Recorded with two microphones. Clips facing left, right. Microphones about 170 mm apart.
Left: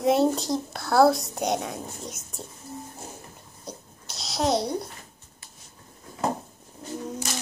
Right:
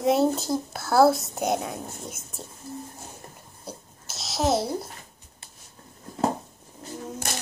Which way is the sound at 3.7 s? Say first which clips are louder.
Even; centre (ahead or behind).